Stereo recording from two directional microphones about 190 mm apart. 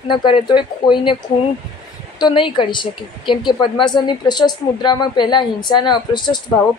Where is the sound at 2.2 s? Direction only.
25° left (ahead or behind).